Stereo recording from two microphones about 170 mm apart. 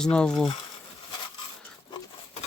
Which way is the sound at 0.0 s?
5° left (ahead or behind).